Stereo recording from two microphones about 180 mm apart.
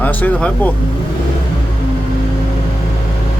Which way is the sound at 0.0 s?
10° left (ahead or behind).